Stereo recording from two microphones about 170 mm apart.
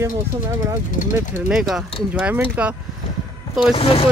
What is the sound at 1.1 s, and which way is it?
Speech, 5° right (ahead or behind).